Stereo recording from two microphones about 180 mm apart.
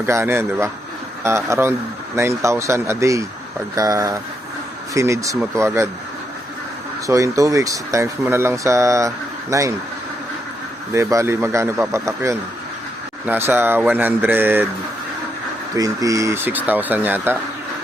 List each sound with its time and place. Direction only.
0.0 s speech: 15° right (ahead or behind)
7.1 s speech: 15° right (ahead or behind)
10.9 s speech: 15° right (ahead or behind)
15.7 s speech: 20° right (ahead or behind)